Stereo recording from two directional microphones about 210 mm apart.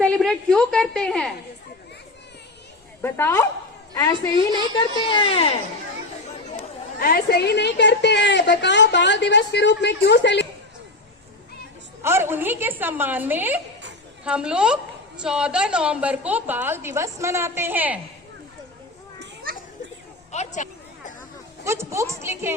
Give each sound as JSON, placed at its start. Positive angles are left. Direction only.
{"t": 0.0, "sound": "a woman's voice", "side_deg": 5}
{"t": 3.0, "sound": "a woman's voice", "side_deg": 10}
{"t": 7.0, "sound": "a woman's voice", "side_deg": 45}
{"t": 12.0, "sound": "a woman's voice", "side_deg": -10}
{"t": 19.2, "sound": "children playing", "side_deg": -45}
{"t": 20.3, "sound": "a sound", "side_deg": 35}
{"t": 21.6, "sound": "a woman's voice", "side_deg": -15}